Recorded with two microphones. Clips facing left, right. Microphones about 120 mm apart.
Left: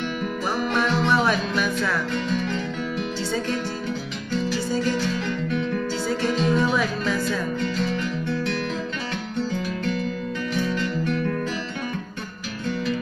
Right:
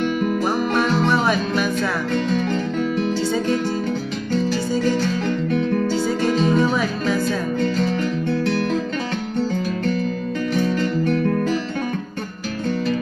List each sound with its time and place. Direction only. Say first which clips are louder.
0.7 s music: right 1 dB; 40° right (ahead or behind)
4.3 s music: right 3 dB; 40° right (ahead or behind)
10.5 s music: right 5 dB; 45° right (ahead or behind)